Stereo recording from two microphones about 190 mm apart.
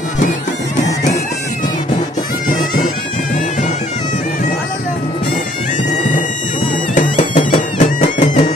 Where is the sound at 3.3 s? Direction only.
40° left (ahead or behind).